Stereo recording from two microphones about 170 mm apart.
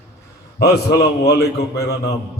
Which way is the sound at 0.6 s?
70° left (ahead or behind).